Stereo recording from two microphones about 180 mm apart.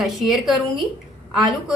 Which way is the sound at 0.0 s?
Centre (ahead or behind).